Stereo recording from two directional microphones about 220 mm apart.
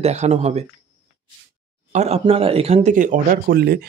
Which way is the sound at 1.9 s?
30° right (ahead or behind).